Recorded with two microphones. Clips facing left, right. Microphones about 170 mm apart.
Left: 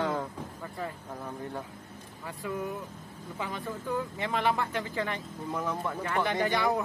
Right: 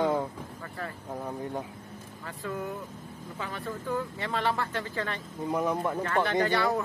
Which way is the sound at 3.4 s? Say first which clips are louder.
Even; 15° left (ahead or behind).